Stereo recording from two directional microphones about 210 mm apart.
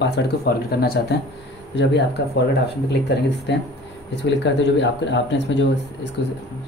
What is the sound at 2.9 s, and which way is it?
Speech, 55° left (ahead or behind).